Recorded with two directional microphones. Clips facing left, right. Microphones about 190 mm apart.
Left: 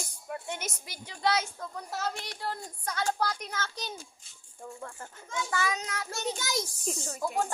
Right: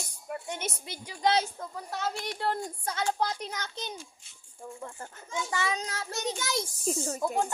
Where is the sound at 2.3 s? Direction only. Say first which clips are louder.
Right 5 dB; 60° right (ahead or behind).